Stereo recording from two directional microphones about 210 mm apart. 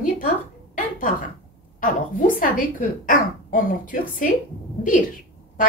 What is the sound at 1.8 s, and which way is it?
A woman's voice, 40° left (ahead or behind).